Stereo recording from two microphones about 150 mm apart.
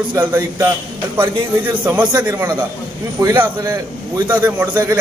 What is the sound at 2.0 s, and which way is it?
A man's voice, 30° right (ahead or behind).